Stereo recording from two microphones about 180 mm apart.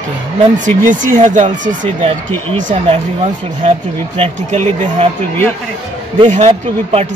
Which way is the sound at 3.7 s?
35° right (ahead or behind).